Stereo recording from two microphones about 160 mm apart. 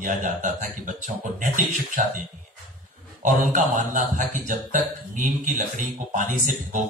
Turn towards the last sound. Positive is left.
turn(degrees=-55)  # may be behind; listen again after turning